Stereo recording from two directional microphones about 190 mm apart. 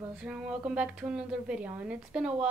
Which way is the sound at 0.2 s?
5° right (ahead or behind).